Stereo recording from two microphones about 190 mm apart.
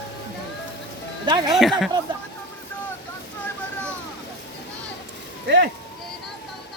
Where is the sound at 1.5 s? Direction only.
Centre (ahead or behind).